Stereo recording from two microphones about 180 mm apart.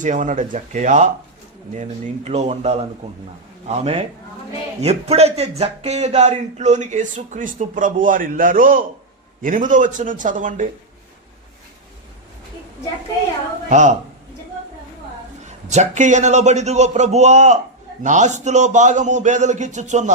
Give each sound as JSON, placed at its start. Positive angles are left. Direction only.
{"t": 0.0, "sound": "speech", "side_deg": -45}
{"t": 13.7, "sound": "a woman's voice", "side_deg": -45}
{"t": 15.7, "sound": "speech", "side_deg": -40}